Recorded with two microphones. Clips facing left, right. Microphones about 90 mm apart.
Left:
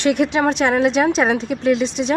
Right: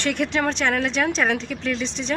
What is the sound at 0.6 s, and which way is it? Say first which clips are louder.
Speech: left 6 dB; 15° left (ahead or behind).